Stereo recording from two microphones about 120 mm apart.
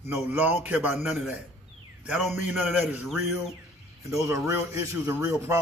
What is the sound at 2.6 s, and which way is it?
Speech, 10° right (ahead or behind).